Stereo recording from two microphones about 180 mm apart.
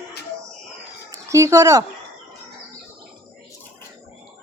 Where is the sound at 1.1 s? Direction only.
15° right (ahead or behind).